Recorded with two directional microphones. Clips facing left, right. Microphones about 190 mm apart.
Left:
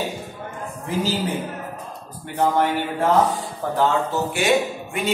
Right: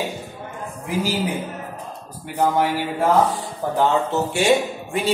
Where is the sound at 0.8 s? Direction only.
10° right (ahead or behind).